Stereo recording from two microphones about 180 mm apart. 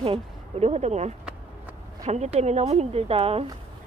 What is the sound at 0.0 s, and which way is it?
Speech, 35° right (ahead or behind).